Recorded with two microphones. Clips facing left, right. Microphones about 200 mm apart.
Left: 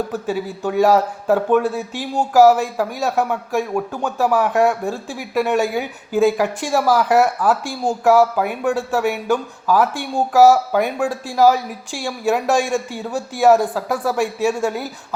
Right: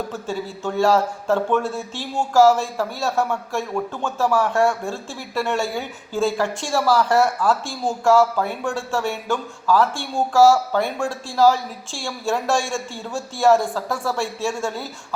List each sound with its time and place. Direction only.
0.1 s speech: 15° left (ahead or behind)